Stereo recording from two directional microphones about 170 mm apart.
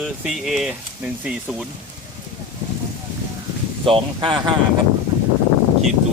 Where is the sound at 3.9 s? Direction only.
30° right (ahead or behind).